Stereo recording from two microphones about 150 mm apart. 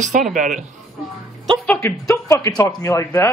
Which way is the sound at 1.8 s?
20° left (ahead or behind).